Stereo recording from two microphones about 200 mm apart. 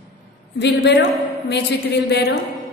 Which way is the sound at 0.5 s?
60° left (ahead or behind).